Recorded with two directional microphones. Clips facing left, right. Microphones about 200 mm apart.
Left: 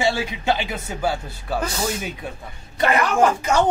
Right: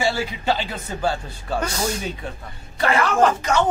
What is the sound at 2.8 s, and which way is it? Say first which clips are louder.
Speech: even; 15° left (ahead or behind).